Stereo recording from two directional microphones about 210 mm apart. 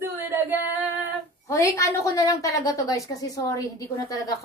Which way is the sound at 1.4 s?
15° left (ahead or behind).